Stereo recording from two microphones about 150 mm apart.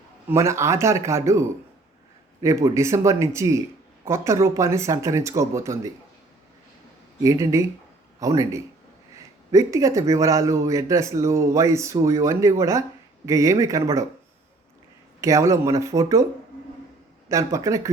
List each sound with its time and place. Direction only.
0.3 s speech: 20° right (ahead or behind)
7.2 s speech: 20° right (ahead or behind)
15.2 s speech: 20° right (ahead or behind)
17.2 s speech: 20° right (ahead or behind)